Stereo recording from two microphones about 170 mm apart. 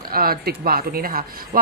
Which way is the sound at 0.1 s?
60° right (ahead or behind).